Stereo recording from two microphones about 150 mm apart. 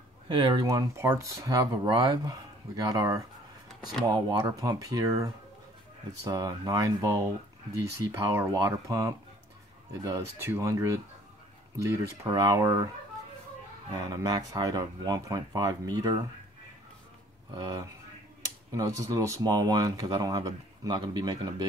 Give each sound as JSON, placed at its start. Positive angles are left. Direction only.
{"t": 0.3, "sound": "speech", "side_deg": -30}
{"t": 13.9, "sound": "speech", "side_deg": -25}
{"t": 17.6, "sound": "speech", "side_deg": -25}